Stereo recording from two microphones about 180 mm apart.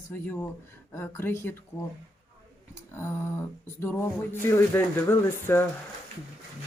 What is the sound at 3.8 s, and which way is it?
Speech, 10° left (ahead or behind).